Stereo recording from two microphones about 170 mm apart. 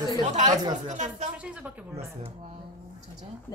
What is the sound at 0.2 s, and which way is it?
Speech, 45° right (ahead or behind).